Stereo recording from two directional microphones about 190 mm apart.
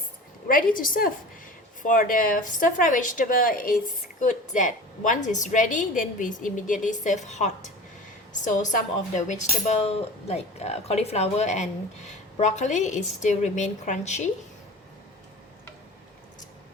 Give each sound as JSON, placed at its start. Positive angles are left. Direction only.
{"t": 0.4, "sound": "a woman's voice", "side_deg": 45}